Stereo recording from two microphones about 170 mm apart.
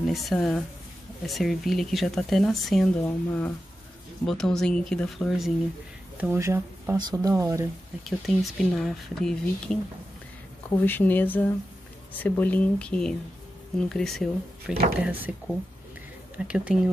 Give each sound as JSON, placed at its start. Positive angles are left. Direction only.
{"t": 0.0, "sound": "speech", "side_deg": 0}
{"t": 6.1, "sound": "speech", "side_deg": -10}
{"t": 8.0, "sound": "speech", "side_deg": 0}
{"t": 10.8, "sound": "speech", "side_deg": 10}
{"t": 16.3, "sound": "speech", "side_deg": -5}